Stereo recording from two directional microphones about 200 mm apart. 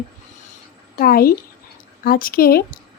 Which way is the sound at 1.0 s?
45° left (ahead or behind).